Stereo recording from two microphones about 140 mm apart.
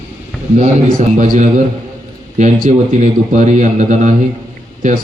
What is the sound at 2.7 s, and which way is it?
A man's voice, 55° right (ahead or behind).